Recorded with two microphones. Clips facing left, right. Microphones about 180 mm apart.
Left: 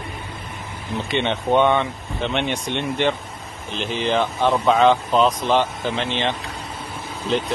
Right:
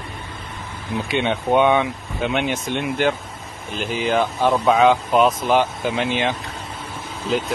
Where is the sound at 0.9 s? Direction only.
Centre (ahead or behind).